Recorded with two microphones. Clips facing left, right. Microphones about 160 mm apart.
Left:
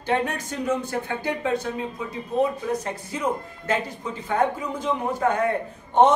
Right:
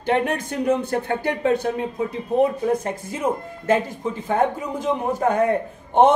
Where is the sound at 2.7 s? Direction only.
50° right (ahead or behind).